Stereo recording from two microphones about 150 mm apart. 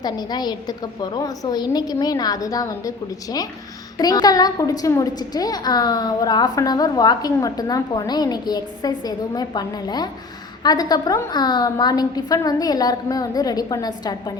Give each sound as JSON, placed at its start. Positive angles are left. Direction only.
{"t": 0.0, "sound": "a woman's voice", "side_deg": 25}